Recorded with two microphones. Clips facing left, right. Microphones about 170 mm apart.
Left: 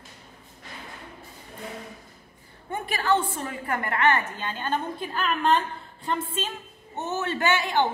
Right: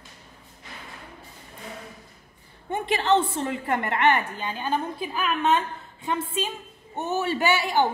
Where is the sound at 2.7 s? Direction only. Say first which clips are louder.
Right 3 dB; 20° right (ahead or behind).